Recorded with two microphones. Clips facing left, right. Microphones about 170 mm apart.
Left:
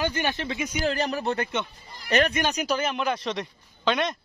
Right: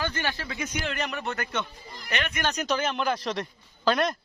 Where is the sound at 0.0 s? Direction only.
20° left (ahead or behind).